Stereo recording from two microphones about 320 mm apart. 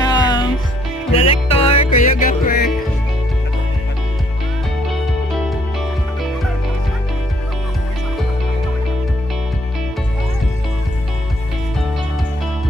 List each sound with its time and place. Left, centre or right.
0.0 s music: centre; by 2.7 s left